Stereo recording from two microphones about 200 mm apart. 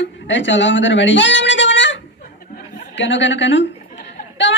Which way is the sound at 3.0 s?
65° left (ahead or behind).